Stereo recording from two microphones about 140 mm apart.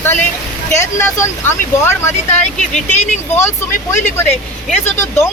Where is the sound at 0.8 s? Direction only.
20° left (ahead or behind).